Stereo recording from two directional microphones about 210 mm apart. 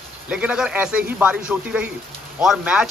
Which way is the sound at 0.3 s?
5° right (ahead or behind).